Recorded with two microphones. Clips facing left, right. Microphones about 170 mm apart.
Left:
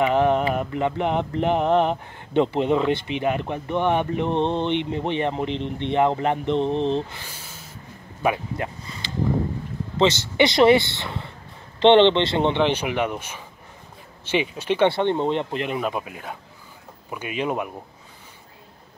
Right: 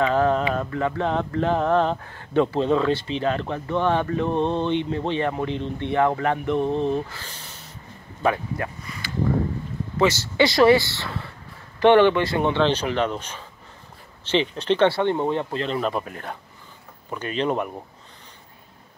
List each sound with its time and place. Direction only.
0.0 s mantra: 20° left (ahead or behind)
0.6 s speech: 20° left (ahead or behind)
7.2 s a sound: 5° left (ahead or behind)
8.2 s speech: 15° left (ahead or behind)
8.8 s a sound: 25° left (ahead or behind)
9.9 s speech: 20° left (ahead or behind)
14.9 s speech: 20° left (ahead or behind)